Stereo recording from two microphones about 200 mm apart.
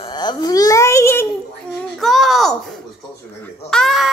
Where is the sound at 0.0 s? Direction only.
20° left (ahead or behind).